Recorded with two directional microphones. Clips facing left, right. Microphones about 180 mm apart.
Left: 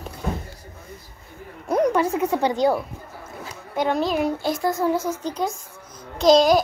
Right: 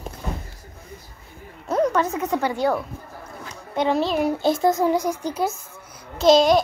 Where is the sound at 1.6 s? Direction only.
10° left (ahead or behind).